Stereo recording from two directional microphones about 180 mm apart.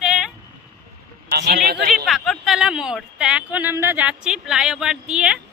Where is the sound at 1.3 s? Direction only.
60° right (ahead or behind).